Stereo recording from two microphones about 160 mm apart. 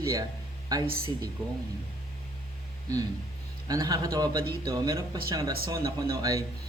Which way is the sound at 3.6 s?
25° right (ahead or behind).